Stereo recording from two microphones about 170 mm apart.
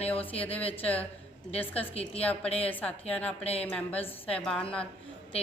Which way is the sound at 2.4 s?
35° left (ahead or behind).